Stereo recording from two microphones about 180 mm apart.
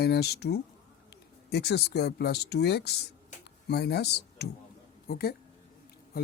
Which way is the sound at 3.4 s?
65° left (ahead or behind).